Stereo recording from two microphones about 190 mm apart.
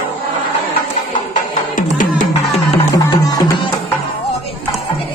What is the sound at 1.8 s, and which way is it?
Music, 45° left (ahead or behind).